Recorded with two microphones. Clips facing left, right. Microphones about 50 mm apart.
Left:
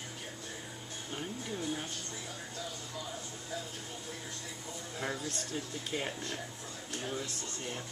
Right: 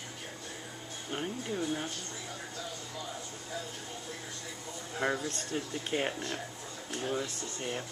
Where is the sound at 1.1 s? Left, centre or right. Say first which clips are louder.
Right 4 dB; right.